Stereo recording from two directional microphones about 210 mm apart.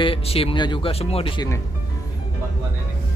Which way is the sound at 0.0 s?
25° left (ahead or behind).